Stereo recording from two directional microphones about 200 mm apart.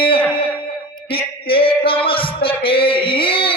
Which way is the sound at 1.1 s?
25° left (ahead or behind).